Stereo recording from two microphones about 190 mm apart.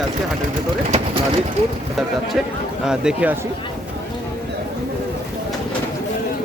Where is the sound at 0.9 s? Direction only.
30° right (ahead or behind).